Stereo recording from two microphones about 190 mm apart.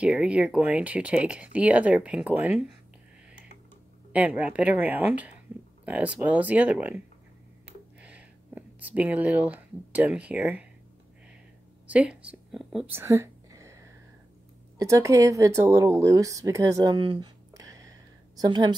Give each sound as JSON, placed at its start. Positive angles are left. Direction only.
{"t": 0.0, "sound": "speech", "side_deg": -5}
{"t": 4.1, "sound": "speech", "side_deg": -10}
{"t": 8.0, "sound": "speech", "side_deg": -5}
{"t": 11.9, "sound": "speech", "side_deg": -5}
{"t": 12.9, "sound": "whispering", "side_deg": -15}
{"t": 14.8, "sound": "speech", "side_deg": -15}